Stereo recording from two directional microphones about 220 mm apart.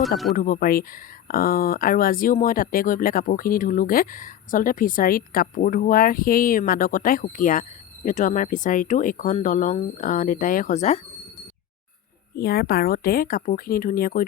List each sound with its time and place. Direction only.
0.3 s speech: 40° left (ahead or behind)
12.4 s speech: 45° left (ahead or behind)